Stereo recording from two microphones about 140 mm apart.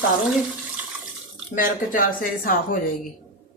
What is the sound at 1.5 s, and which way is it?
Speech, 80° left.